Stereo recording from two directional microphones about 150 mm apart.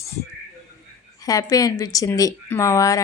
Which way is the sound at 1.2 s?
25° left (ahead or behind).